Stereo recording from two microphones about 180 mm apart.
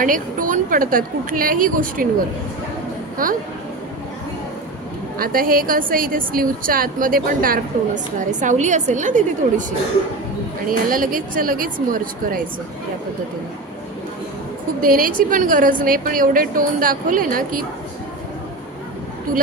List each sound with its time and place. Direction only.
0.0 s a woman's voice: 50° right (ahead or behind)
3.2 s a woman's voice: 50° right (ahead or behind)
5.2 s a woman's voice: 55° right (ahead or behind)
10.7 s a woman's voice: 50° right (ahead or behind)
14.8 s a woman's voice: 50° right (ahead or behind)